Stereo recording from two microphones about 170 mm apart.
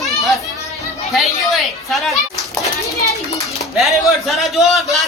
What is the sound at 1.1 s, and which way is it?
A man's voice, centre (ahead or behind).